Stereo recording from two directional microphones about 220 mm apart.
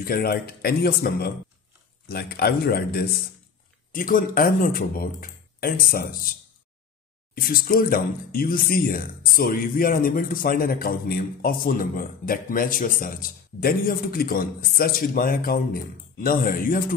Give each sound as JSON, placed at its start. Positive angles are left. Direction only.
{"t": 0.0, "sound": "speech", "side_deg": 45}
{"t": 7.3, "sound": "speech", "side_deg": 40}